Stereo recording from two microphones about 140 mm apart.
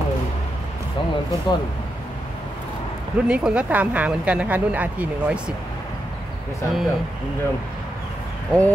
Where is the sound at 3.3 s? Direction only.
5° right (ahead or behind).